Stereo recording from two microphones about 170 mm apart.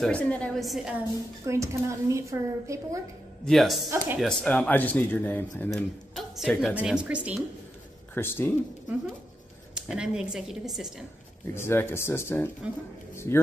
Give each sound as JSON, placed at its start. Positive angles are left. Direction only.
{"t": 0.0, "sound": "a woman's voice", "side_deg": 5}
{"t": 1.4, "sound": "speech", "side_deg": -15}
{"t": 3.4, "sound": "a woman's voice", "side_deg": 0}
{"t": 5.7, "sound": "speech", "side_deg": 0}
{"t": 8.1, "sound": "speech", "side_deg": 15}
{"t": 9.8, "sound": "a woman's voice", "side_deg": -5}
{"t": 11.5, "sound": "speech", "side_deg": 15}